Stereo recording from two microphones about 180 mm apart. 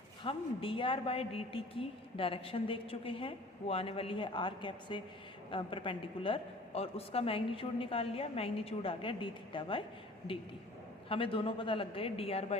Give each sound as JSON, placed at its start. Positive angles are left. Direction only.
{"t": 0.2, "sound": "a woman's voice", "side_deg": 30}
{"t": 11.1, "sound": "a woman's voice", "side_deg": 30}